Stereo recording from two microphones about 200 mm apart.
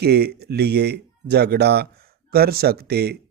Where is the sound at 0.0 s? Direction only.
55° right (ahead or behind).